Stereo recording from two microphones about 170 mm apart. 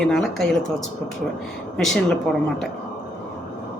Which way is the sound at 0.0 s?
5° left (ahead or behind).